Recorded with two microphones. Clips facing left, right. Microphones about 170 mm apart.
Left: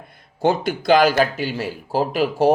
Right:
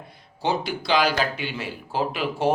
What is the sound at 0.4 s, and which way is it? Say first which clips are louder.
Speech: left 7 dB; 50° left (ahead or behind).